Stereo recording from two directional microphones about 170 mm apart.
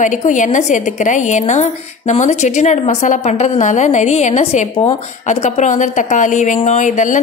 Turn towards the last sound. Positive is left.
turn(degrees=45)  # may be behind; listen again after turning